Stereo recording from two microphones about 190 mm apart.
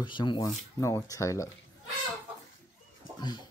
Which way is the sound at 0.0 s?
25° left (ahead or behind).